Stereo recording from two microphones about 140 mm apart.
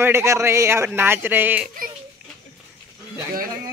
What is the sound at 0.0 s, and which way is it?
A man's voice, 20° right (ahead or behind).